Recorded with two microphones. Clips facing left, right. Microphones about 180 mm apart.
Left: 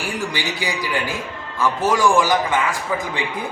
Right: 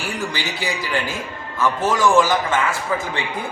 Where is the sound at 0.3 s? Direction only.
15° left (ahead or behind).